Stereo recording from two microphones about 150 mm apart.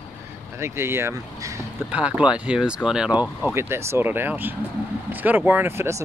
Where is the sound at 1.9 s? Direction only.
10° right (ahead or behind).